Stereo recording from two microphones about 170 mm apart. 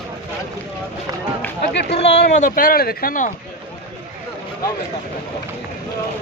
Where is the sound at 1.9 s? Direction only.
40° left (ahead or behind).